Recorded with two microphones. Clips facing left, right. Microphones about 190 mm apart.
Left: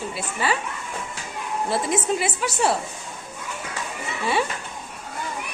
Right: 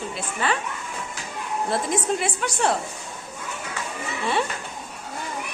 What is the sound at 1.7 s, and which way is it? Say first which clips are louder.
A woman's voice: left 1 dB; 5° left (ahead or behind).